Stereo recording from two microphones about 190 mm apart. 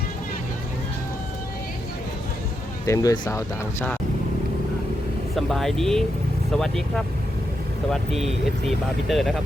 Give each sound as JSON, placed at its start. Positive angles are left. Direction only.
{"t": 2.8, "sound": "speech", "side_deg": 15}
{"t": 5.4, "sound": "speech", "side_deg": 0}
{"t": 9.0, "sound": "speech", "side_deg": 0}